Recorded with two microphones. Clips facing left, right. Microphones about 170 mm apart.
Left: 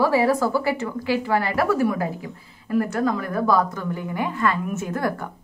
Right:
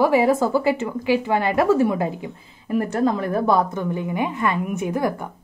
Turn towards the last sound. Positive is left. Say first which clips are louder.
# right 3 dB
turn(degrees=-15)  # may be behind; listen again after turning